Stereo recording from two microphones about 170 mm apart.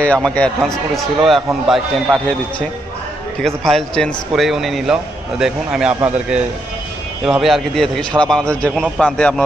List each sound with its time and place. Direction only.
0.0 s a man's voice: 5° left (ahead or behind)
3.4 s a man's voice: centre (ahead or behind)